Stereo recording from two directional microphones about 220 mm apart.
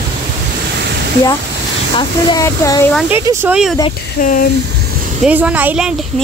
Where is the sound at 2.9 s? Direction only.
Centre (ahead or behind).